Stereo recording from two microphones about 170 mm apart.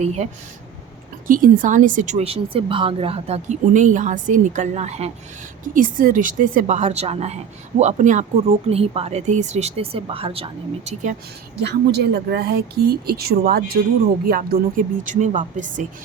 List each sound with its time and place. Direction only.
0.0 s speech: 40° right (ahead or behind)
1.3 s a woman's voice: 50° right (ahead or behind)
5.7 s a woman's voice: 50° right (ahead or behind); by 11.1 s 35° right (ahead or behind)
11.6 s a woman's voice: 75° right (ahead or behind); by 15.9 s 50° right (ahead or behind)